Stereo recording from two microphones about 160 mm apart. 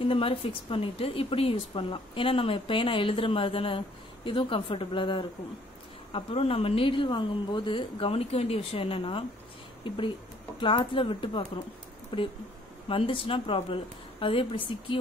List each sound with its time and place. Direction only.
0.0 s speech: 35° left (ahead or behind)